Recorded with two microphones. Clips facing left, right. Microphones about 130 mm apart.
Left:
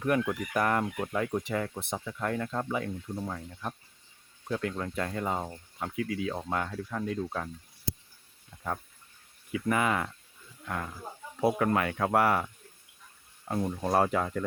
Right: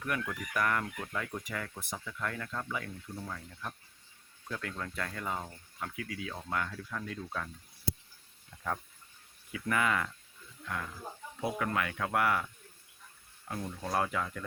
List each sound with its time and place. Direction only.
0.2 s speech: 25° left (ahead or behind)
9.5 s speech: 25° left (ahead or behind)
11.3 s speech: 40° left (ahead or behind)
13.5 s speech: 35° left (ahead or behind)